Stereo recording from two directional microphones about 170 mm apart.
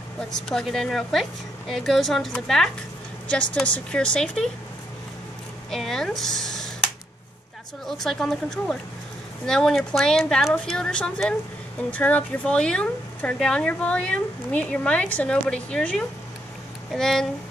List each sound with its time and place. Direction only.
0.3 s speech: centre (ahead or behind)
5.7 s speech: centre (ahead or behind)
8.0 s speech: centre (ahead or behind)